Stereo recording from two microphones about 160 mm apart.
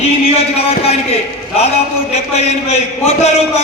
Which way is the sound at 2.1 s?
45° left (ahead or behind).